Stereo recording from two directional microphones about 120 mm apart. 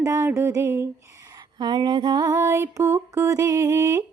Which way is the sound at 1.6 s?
35° right (ahead or behind).